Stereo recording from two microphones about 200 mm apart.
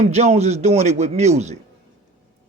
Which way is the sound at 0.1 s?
35° right (ahead or behind).